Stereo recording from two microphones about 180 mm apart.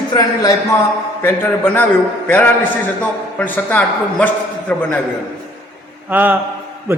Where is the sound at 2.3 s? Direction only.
10° left (ahead or behind).